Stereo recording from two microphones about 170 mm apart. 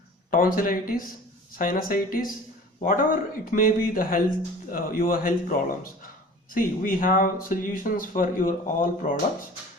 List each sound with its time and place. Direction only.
0.3 s speech: 55° left (ahead or behind)